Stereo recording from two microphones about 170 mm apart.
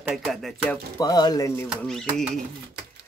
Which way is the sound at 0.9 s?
25° left (ahead or behind).